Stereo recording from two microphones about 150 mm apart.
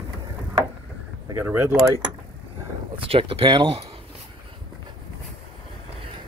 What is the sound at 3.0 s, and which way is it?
Speech, 40° right (ahead or behind).